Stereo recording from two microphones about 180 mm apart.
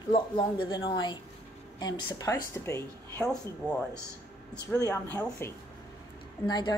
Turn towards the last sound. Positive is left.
turn(degrees=25)  # may be behind; listen again after turning